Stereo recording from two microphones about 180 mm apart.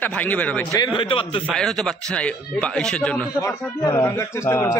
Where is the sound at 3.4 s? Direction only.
15° left (ahead or behind).